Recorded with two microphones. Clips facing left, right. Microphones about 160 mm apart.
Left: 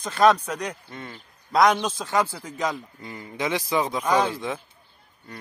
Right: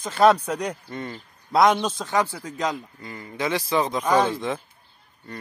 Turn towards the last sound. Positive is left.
turn(degrees=5)  # may be behind; listen again after turning